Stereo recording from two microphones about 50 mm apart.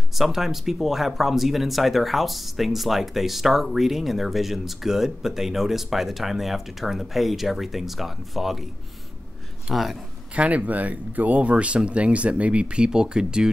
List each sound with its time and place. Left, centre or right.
0.1 s speech: centre
9.7 s speech: centre
10.3 s speech: right